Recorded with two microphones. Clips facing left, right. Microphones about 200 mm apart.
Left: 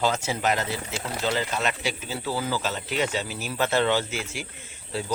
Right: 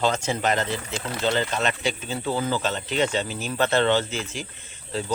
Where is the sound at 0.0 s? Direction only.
5° left (ahead or behind).